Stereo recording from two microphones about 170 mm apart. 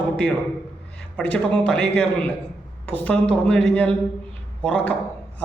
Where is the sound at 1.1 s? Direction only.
5° left (ahead or behind).